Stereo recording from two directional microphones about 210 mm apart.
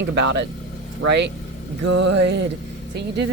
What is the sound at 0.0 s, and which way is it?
Mantra, 55° right (ahead or behind).